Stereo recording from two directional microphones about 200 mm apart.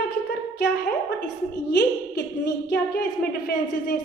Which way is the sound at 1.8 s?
55° left (ahead or behind).